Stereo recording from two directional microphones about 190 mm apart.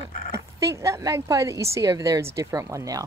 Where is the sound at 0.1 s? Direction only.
45° left (ahead or behind).